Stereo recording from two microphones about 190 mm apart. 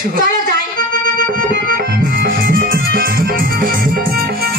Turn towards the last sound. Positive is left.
turn(degrees=-50)  # may be behind; listen again after turning